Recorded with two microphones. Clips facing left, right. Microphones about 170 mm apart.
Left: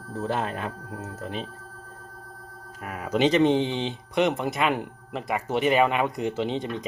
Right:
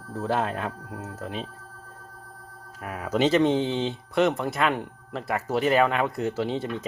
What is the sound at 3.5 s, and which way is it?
Speech, 15° left (ahead or behind).